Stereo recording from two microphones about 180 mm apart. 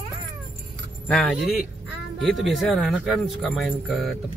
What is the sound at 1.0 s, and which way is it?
Speech, 5° left (ahead or behind).